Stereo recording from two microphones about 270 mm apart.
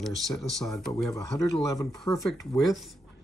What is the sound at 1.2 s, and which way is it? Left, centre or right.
Speech, centre.